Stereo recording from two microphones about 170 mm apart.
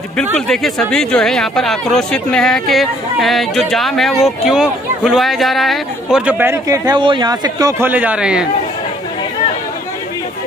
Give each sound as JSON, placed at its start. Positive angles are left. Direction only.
{"t": 0.5, "sound": "speech", "side_deg": 5}
{"t": 7.8, "sound": "speech", "side_deg": -10}